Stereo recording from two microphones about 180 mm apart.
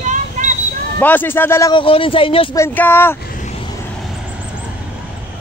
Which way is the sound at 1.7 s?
30° left (ahead or behind).